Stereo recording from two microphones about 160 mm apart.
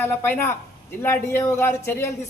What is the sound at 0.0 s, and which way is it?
A man's voice, 15° left (ahead or behind).